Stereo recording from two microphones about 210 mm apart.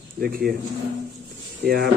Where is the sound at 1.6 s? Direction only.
50° right (ahead or behind).